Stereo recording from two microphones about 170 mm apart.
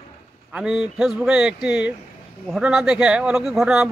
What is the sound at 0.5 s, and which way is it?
Speech, 5° right (ahead or behind).